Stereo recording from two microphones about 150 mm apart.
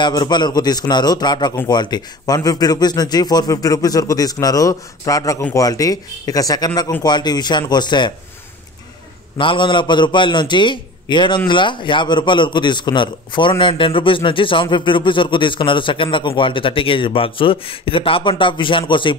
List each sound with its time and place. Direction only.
0.0 s speech: 30° left (ahead or behind)
9.4 s a man's voice: 35° left (ahead or behind)